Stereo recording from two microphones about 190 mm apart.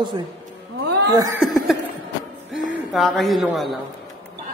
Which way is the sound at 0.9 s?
60° right (ahead or behind).